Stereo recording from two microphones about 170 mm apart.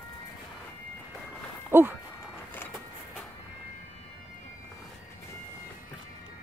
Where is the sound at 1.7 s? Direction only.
15° right (ahead or behind).